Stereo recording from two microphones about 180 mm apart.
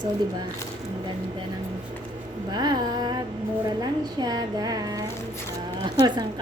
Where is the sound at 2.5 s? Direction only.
20° right (ahead or behind).